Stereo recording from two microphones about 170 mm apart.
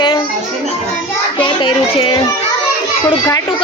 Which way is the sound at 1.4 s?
30° left (ahead or behind).